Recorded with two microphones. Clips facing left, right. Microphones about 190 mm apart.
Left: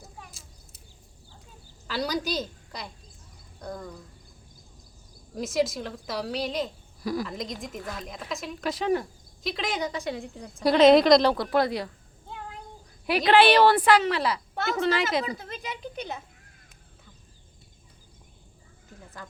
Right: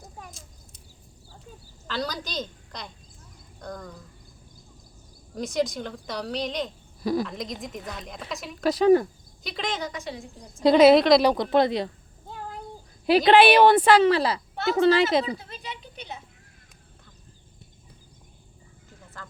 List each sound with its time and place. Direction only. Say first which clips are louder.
1.9 s a woman's voice: left 3 dB; 10° left (ahead or behind)
5.3 s a woman's voice: even; 5° left (ahead or behind)
7.0 s a woman's voice: right 4 dB; 25° right (ahead or behind)
7.3 s a woman's voice: even; centre (ahead or behind)
8.6 s speech: right 8 dB; 40° right (ahead or behind)
9.4 s a woman's voice: left 1 dB; centre (ahead or behind)
10.1 s a woman's voice: left 4 dB; 60° left (ahead or behind)
10.8 s a woman's voice: right 1 dB; 5° right (ahead or behind)
11.2 s a woman's voice: right 3 dB; 15° right (ahead or behind)
13.1 s a woman's voice: right 4 dB; 25° right (ahead or behind)
13.4 s a woman's voice: right 2 dB; 15° right (ahead or behind); by 15.3 s 30° right (ahead or behind)
15.4 s speech: left 3 dB; 45° left (ahead or behind)
19.2 s speech: even; 15° left (ahead or behind)